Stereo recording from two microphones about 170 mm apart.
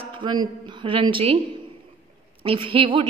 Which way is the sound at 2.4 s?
30° right (ahead or behind).